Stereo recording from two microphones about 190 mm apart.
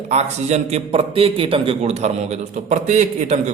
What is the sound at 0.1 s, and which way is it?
A man's voice, 35° right (ahead or behind).